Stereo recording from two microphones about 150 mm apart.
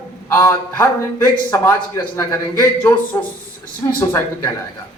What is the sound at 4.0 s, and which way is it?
Speech, 15° left (ahead or behind).